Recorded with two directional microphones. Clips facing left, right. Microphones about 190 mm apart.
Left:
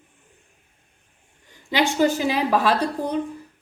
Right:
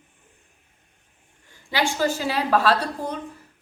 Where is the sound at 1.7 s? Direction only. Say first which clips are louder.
Left 4 dB; 20° left (ahead or behind).